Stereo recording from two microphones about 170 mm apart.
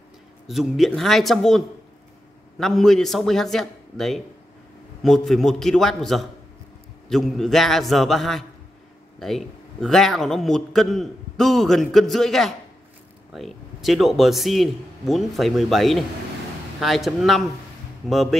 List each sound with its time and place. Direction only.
0.5 s a man's voice: centre (ahead or behind)
2.6 s a man's voice: centre (ahead or behind)